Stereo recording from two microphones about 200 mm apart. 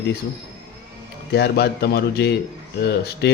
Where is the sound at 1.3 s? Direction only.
55° left (ahead or behind).